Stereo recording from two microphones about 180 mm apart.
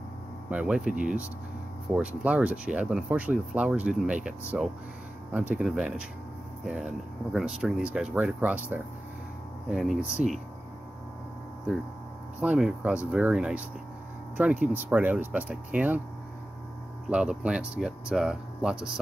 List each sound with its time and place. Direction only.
0.5 s speech: 5° right (ahead or behind)
12.4 s speech: 5° right (ahead or behind)
17.1 s speech: 5° right (ahead or behind)